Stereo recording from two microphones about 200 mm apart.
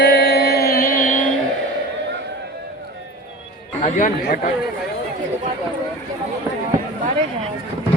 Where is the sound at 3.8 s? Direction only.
40° left (ahead or behind).